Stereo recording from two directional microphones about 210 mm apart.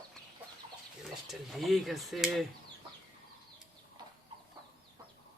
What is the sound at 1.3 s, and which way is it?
Speech, centre (ahead or behind).